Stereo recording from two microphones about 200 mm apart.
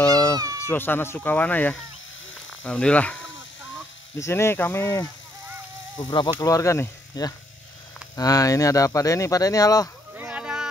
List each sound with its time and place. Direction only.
0.0 s baby cry: 15° left (ahead or behind)
0.6 s speech: 10° left (ahead or behind)
5.9 s speech: 20° left (ahead or behind)
10.1 s a sound: 5° right (ahead or behind)